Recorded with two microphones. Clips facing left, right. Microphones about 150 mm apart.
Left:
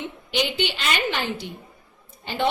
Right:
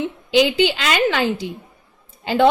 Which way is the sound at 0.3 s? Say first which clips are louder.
Right 9 dB; 90° right.